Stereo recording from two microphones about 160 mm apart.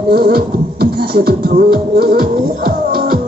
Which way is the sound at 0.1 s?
70° right (ahead or behind).